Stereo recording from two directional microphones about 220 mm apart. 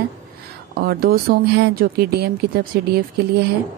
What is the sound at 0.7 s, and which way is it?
Speech, 45° right (ahead or behind).